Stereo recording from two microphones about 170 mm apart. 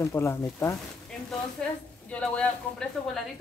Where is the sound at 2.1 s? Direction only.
5° left (ahead or behind).